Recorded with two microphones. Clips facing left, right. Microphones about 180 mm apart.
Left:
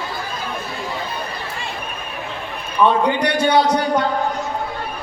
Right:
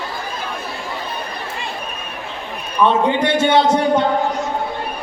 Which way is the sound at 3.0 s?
25° right (ahead or behind).